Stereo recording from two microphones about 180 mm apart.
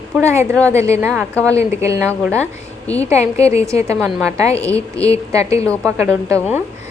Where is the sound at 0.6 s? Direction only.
15° right (ahead or behind).